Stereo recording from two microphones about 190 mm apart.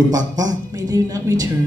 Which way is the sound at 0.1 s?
20° right (ahead or behind).